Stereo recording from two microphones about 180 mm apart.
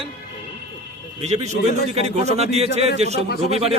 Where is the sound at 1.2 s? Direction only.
35° right (ahead or behind).